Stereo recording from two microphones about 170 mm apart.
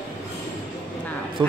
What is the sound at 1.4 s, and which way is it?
Speech, 25° right (ahead or behind).